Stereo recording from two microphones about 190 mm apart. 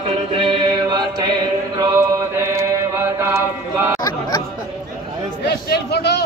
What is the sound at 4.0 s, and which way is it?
Chatter, 20° left (ahead or behind).